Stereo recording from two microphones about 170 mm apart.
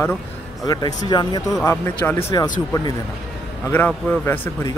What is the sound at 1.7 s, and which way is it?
Speech, 15° left (ahead or behind).